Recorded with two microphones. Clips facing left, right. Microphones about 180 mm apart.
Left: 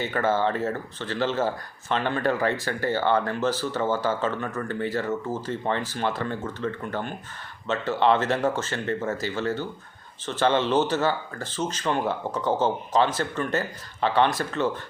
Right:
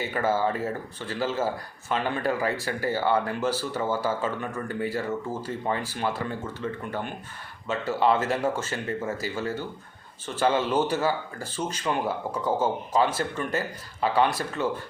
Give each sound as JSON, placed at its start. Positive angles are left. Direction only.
{"t": 0.0, "sound": "speech", "side_deg": -10}
{"t": 12.5, "sound": "speech", "side_deg": 25}
{"t": 12.9, "sound": "speech", "side_deg": -10}